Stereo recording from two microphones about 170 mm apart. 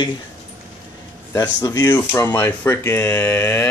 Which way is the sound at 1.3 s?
20° left (ahead or behind).